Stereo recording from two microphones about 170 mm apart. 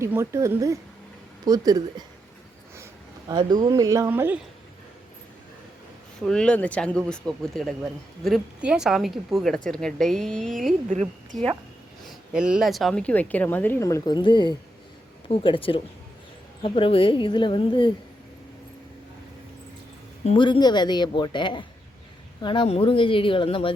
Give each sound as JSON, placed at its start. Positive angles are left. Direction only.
{"t": 0.0, "sound": "a woman's voice", "side_deg": -15}
{"t": 3.2, "sound": "speech", "side_deg": -25}
{"t": 6.1, "sound": "speech", "side_deg": 5}
{"t": 10.8, "sound": "a woman's voice", "side_deg": -45}
{"t": 12.0, "sound": "speech", "side_deg": -5}
{"t": 20.2, "sound": "speech", "side_deg": 30}